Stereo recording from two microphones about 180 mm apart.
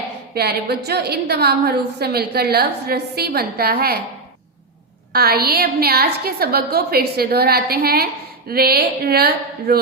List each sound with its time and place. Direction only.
0.3 s a woman's voice: 60° right (ahead or behind)
5.1 s a woman's voice: 60° right (ahead or behind)